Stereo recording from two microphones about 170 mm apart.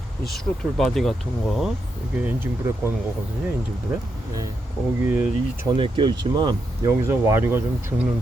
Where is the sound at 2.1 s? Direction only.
10° right (ahead or behind).